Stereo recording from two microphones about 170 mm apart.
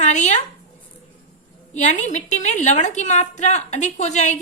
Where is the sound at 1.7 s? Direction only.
45° left (ahead or behind).